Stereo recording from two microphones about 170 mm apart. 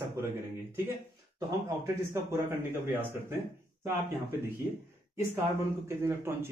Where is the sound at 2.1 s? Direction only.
15° right (ahead or behind).